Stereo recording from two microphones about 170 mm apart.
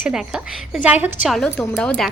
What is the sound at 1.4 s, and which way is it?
Speech, 10° left (ahead or behind).